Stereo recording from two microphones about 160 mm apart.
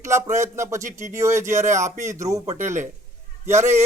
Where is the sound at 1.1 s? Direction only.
20° right (ahead or behind).